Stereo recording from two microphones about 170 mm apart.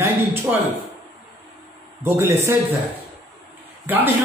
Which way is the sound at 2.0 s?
15° right (ahead or behind).